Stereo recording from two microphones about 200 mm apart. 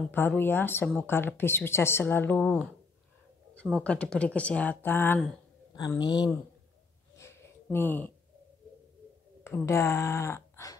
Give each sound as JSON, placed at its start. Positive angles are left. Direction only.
{"t": 0.1, "sound": "speech", "side_deg": 10}
{"t": 7.2, "sound": "a sound", "side_deg": 10}
{"t": 9.4, "sound": "speech", "side_deg": 10}